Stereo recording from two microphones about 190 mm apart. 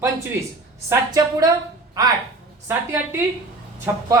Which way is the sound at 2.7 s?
15° right (ahead or behind).